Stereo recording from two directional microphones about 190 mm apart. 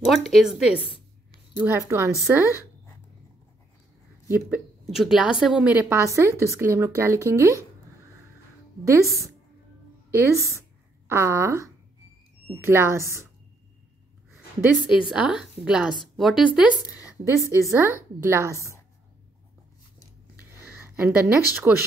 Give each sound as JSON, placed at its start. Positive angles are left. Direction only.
{"t": 0.0, "sound": "a woman's voice", "side_deg": 0}
{"t": 4.3, "sound": "a woman's voice", "side_deg": -5}
{"t": 10.1, "sound": "a woman's voice", "side_deg": -15}
{"t": 14.3, "sound": "a woman's voice", "side_deg": -5}
{"t": 20.8, "sound": "speech", "side_deg": -10}